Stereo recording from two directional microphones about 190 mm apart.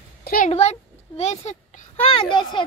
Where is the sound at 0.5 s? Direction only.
35° left (ahead or behind).